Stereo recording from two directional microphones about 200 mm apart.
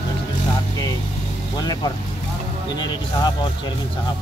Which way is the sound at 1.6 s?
20° left (ahead or behind).